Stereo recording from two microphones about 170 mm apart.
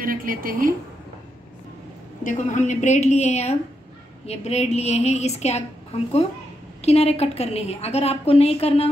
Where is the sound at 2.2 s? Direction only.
45° left (ahead or behind).